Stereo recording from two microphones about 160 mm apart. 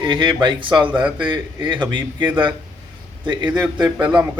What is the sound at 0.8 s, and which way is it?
Speech, 10° right (ahead or behind).